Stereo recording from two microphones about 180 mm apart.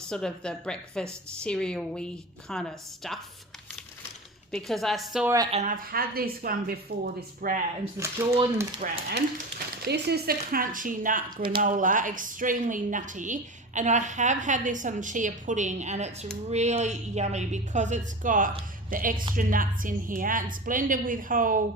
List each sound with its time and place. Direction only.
0.1 s a woman's voice: 5° left (ahead or behind)
4.5 s a woman's voice: centre (ahead or behind)
5.5 s a woman's voice: 40° right (ahead or behind)
7.9 s speech: 15° right (ahead or behind)
8.8 s a woman's voice: 45° right (ahead or behind)
9.8 s a woman's voice: 65° right (ahead or behind)